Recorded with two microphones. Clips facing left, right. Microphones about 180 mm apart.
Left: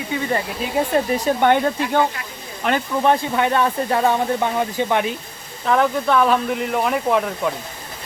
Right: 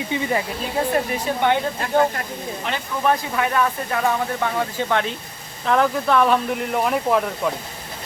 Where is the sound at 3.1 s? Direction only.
30° left (ahead or behind).